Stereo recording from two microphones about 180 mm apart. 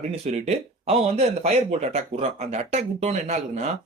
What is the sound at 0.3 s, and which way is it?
Speech, 35° right (ahead or behind).